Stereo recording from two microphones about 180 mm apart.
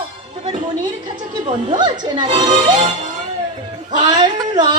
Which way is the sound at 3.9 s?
20° right (ahead or behind).